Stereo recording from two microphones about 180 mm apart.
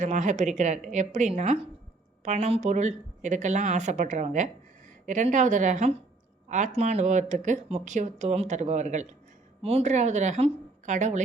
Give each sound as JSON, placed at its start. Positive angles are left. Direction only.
{"t": 0.0, "sound": "a woman's voice", "side_deg": -45}